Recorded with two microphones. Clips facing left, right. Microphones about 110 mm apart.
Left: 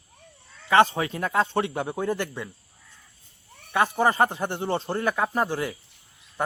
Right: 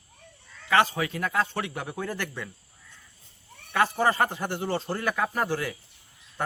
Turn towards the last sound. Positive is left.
turn(degrees=20)  # may be behind; listen again after turning